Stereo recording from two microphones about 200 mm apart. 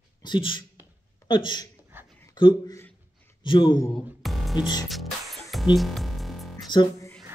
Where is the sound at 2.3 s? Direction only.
20° left (ahead or behind).